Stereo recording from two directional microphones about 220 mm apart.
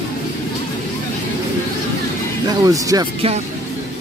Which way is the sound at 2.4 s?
15° right (ahead or behind).